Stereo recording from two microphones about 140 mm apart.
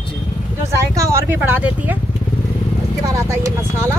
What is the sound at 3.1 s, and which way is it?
Speech, 20° right (ahead or behind).